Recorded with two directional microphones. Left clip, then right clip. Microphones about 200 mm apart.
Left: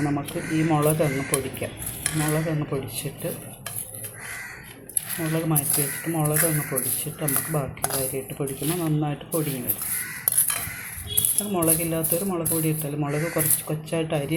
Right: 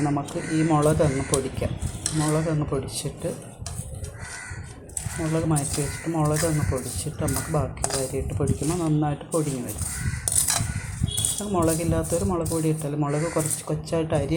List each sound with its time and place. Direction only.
0.0 s speech: centre (ahead or behind)
5.2 s speech: 5° right (ahead or behind)
11.3 s speech: centre (ahead or behind)